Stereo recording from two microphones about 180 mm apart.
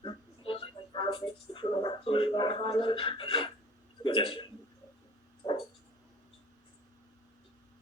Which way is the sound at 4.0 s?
30° left (ahead or behind).